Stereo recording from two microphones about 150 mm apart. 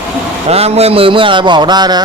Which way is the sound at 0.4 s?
45° right (ahead or behind).